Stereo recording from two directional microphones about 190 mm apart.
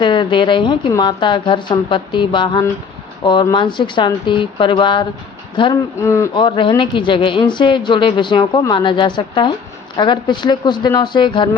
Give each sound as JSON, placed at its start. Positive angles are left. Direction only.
{"t": 0.0, "sound": "speech", "side_deg": 25}
{"t": 6.0, "sound": "a man's voice", "side_deg": 15}
{"t": 6.3, "sound": "speech", "side_deg": 25}